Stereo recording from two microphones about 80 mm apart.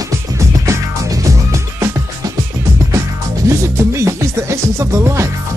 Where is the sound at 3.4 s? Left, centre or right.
Right.